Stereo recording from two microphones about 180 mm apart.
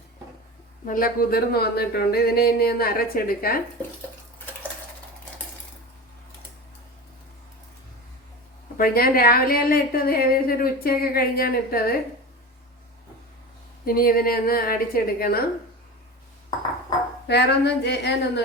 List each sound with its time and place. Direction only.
0.9 s a woman's voice: 50° left (ahead or behind)
8.8 s a woman's voice: 55° left (ahead or behind)
13.8 s a woman's voice: 55° left (ahead or behind)
17.2 s a sound: 70° left (ahead or behind)